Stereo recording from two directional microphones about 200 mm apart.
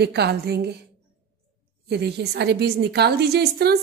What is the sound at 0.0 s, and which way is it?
Speech, 55° right (ahead or behind).